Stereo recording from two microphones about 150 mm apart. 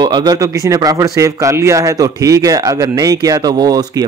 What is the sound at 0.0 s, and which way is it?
Speech, 30° right (ahead or behind).